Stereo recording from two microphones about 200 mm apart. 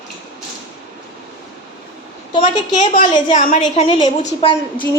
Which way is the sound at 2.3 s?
20° left (ahead or behind).